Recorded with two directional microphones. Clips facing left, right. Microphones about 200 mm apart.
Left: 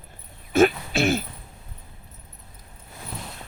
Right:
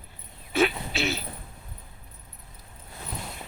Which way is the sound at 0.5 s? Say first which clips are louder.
Left 6 dB; 50° left (ahead or behind).